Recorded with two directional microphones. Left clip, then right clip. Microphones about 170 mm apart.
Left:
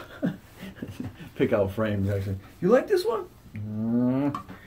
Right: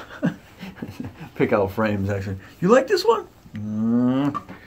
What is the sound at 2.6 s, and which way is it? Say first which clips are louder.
Speech: right 4 dB; 40° right (ahead or behind).